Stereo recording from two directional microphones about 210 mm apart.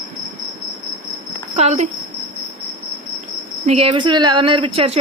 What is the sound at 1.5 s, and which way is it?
Speech, 30° right (ahead or behind).